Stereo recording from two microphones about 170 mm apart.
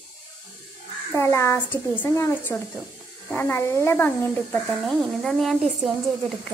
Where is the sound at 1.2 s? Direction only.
15° left (ahead or behind).